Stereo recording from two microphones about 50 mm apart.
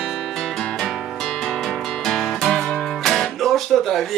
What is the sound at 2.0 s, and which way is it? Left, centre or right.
Guitar, centre.